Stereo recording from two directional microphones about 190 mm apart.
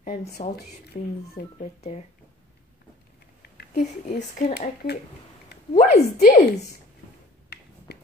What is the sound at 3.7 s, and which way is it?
Speech, 45° left (ahead or behind).